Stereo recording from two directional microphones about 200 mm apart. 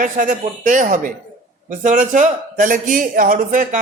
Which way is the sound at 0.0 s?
40° right (ahead or behind).